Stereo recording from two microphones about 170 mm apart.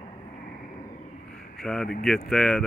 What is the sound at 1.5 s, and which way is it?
Speech, 5° left (ahead or behind).